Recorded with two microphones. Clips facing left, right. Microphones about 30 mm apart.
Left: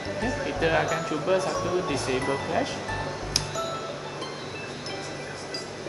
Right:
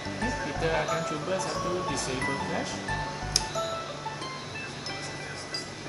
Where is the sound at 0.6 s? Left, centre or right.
Left.